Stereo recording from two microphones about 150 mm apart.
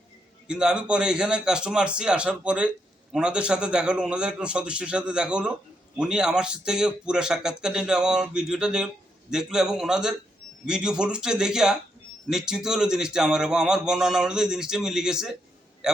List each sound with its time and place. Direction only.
0.4 s a man's voice: 5° right (ahead or behind)